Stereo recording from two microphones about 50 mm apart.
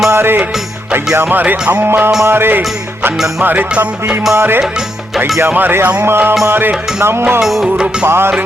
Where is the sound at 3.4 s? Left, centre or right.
Right.